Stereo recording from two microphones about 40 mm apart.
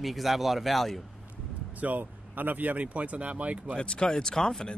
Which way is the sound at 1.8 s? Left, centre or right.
Right.